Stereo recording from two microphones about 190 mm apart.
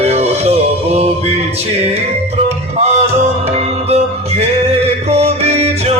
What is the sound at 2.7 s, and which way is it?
Music, 35° right (ahead or behind).